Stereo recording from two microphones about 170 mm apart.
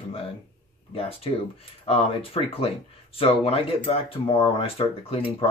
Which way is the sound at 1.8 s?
35° left (ahead or behind).